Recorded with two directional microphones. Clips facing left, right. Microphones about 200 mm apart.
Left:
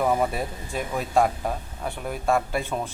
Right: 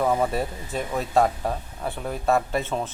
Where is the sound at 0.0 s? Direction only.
5° left (ahead or behind).